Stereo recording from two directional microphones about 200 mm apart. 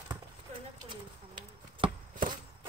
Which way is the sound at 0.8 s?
25° right (ahead or behind).